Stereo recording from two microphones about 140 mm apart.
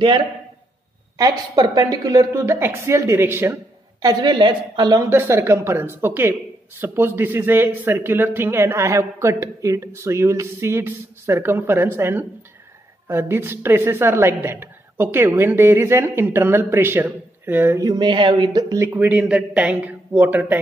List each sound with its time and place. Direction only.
0.0 s a man's voice: 35° right (ahead or behind)
1.6 s a woman's voice: 30° right (ahead or behind)
4.0 s speech: 30° right (ahead or behind)
5.1 s a woman's voice: 20° right (ahead or behind)
18.9 s a woman's voice: 10° right (ahead or behind)